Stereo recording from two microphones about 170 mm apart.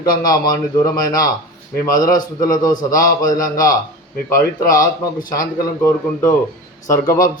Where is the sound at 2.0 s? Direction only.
50° left (ahead or behind).